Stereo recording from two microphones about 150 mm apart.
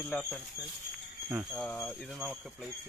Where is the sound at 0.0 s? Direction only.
5° left (ahead or behind).